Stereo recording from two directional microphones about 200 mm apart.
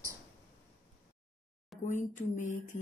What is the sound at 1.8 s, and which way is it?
Speech, 40° left (ahead or behind).